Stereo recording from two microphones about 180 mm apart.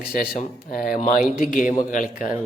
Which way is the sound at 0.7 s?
50° left (ahead or behind).